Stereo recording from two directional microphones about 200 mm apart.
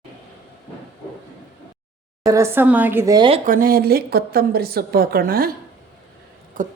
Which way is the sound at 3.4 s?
45° right (ahead or behind).